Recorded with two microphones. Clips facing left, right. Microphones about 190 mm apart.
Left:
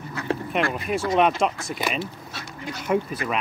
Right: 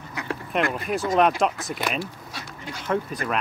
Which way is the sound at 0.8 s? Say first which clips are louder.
Even; centre (ahead or behind).